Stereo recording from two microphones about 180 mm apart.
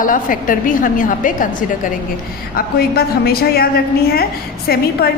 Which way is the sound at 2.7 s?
60° left (ahead or behind).